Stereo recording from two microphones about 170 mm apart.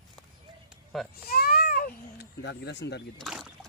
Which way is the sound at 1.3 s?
65° left (ahead or behind).